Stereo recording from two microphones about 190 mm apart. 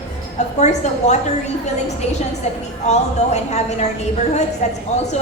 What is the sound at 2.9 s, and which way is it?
A woman's voice, 35° left (ahead or behind).